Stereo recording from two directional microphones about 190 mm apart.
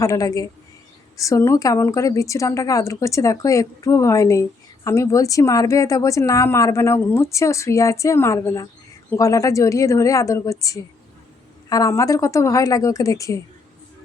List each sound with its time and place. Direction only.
0.0 s a woman's voice: 20° left (ahead or behind)